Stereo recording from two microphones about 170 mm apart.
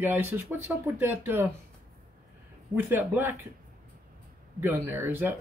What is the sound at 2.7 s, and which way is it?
Speech, 10° right (ahead or behind).